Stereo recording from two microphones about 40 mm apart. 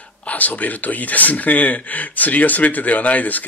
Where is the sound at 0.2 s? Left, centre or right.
Left.